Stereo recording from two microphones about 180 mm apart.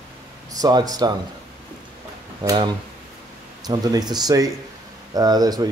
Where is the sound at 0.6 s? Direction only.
20° right (ahead or behind).